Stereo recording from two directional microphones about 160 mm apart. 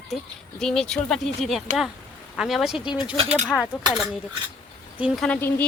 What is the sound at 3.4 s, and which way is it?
Speech, centre (ahead or behind).